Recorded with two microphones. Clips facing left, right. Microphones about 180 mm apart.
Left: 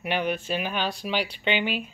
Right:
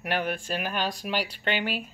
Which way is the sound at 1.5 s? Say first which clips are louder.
Left 3 dB; 40° right (ahead or behind).